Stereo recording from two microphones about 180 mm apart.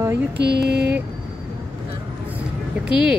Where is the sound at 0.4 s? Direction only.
70° right (ahead or behind).